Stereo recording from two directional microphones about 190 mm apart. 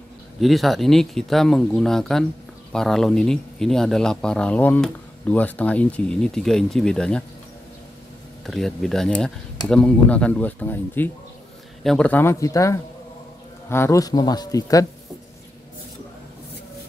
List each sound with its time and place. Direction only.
0.4 s speech: centre (ahead or behind)
8.5 s speech: centre (ahead or behind); by 14.9 s 20° left (ahead or behind)